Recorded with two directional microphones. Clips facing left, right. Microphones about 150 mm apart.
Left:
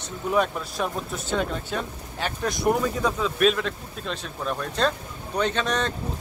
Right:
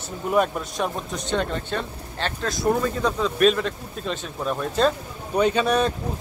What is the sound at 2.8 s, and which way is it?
Speech, 5° left (ahead or behind).